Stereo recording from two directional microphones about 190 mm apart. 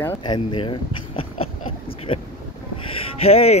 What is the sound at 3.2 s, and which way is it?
Speech, 30° left (ahead or behind).